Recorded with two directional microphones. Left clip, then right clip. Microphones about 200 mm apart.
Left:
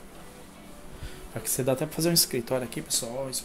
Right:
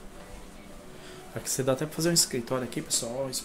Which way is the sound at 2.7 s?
Centre (ahead or behind).